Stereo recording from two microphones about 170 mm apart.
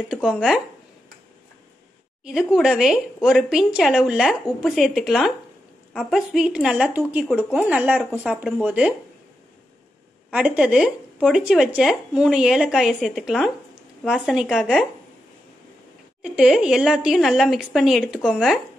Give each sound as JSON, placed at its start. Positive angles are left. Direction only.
{"t": 0.1, "sound": "speech", "side_deg": 0}
{"t": 2.2, "sound": "speech", "side_deg": 0}
{"t": 10.3, "sound": "speech", "side_deg": -5}
{"t": 16.2, "sound": "speech", "side_deg": -5}